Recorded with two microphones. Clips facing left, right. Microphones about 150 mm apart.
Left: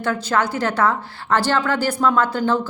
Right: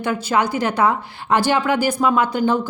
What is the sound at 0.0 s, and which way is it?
A woman's voice, 10° right (ahead or behind).